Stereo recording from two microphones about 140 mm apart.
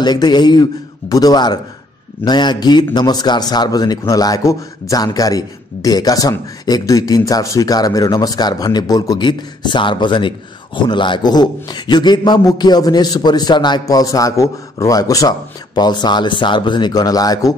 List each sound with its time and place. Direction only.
0.0 s a man's voice: 30° left (ahead or behind)